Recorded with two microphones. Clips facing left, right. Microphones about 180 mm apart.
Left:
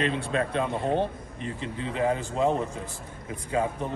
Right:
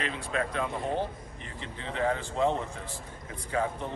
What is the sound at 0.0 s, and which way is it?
Speech, 25° left (ahead or behind).